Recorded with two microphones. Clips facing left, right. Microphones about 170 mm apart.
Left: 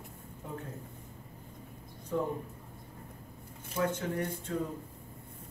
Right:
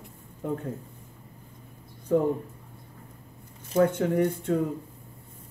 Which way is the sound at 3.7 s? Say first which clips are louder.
Right 10 dB; 55° right (ahead or behind).